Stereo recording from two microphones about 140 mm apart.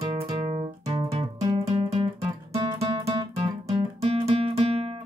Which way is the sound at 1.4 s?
35° right (ahead or behind).